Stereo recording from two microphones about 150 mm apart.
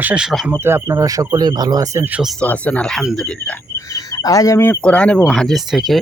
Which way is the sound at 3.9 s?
25° left (ahead or behind).